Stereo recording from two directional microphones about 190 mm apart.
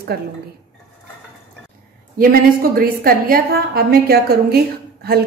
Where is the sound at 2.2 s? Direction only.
50° right (ahead or behind).